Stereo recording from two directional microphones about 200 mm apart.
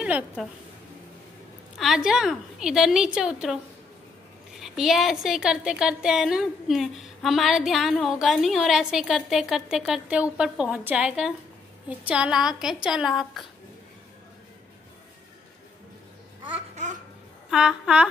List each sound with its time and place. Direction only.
0.0 s a woman's voice: 5° right (ahead or behind)
1.8 s a woman's voice: 5° right (ahead or behind)
4.6 s a woman's voice: centre (ahead or behind)
16.7 s babbling: 35° right (ahead or behind)
17.5 s a woman's voice: 5° right (ahead or behind)